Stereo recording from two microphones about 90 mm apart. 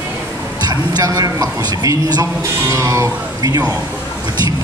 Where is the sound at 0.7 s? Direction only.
45° right (ahead or behind).